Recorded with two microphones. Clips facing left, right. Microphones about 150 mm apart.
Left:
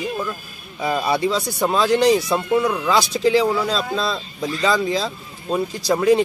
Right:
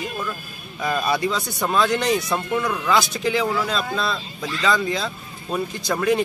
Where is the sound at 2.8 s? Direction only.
35° left (ahead or behind).